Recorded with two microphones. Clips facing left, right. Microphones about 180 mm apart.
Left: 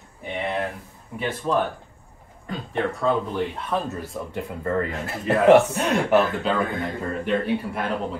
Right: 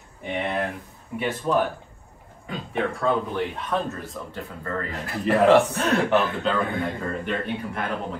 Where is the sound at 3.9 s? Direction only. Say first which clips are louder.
Left 4 dB; 15° left (ahead or behind).